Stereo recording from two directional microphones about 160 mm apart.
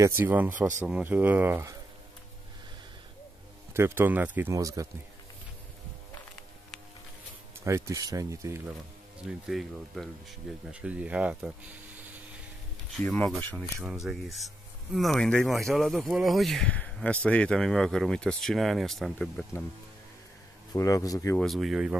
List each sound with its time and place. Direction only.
0.0 s speech: 15° right (ahead or behind)
3.7 s speech: 15° right (ahead or behind)
7.6 s speech: 20° right (ahead or behind)
9.5 s speech: centre (ahead or behind)
13.0 s speech: 5° left (ahead or behind)
13.8 s speech: centre (ahead or behind)
20.7 s speech: 20° left (ahead or behind)
21.4 s speech: centre (ahead or behind)